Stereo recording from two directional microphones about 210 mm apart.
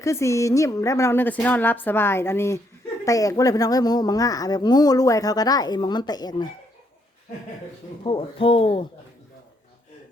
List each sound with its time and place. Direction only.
0.0 s a woman's voice: 15° left (ahead or behind)
8.0 s speech: 25° left (ahead or behind)